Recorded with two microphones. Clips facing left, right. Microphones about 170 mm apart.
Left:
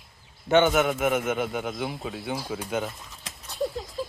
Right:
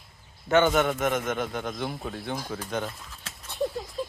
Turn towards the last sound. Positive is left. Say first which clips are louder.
# even
turn(degrees=5)  # may be behind; listen again after turning